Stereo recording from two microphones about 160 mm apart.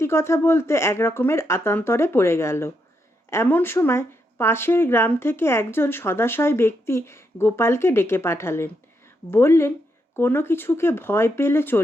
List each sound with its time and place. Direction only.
0.0 s speech: 15° left (ahead or behind)